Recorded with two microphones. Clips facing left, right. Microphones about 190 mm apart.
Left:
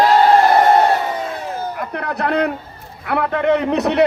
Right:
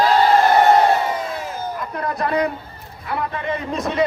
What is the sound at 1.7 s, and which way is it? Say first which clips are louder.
A man's voice: left 1 dB; 65° left (ahead or behind).